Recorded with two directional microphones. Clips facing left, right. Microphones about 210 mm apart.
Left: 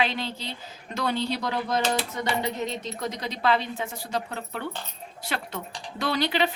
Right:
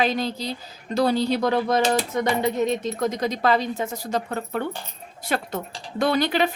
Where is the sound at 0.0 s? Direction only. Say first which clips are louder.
Right 5 dB; 40° right (ahead or behind).